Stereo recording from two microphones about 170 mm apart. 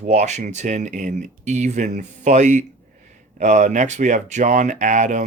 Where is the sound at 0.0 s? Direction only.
45° right (ahead or behind).